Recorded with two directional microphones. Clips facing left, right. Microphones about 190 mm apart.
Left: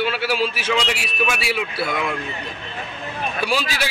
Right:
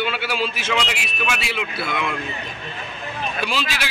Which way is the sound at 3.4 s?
40° left (ahead or behind).